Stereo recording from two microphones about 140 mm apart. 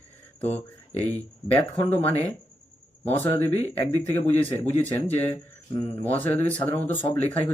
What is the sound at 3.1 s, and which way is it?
Speech, 15° left (ahead or behind).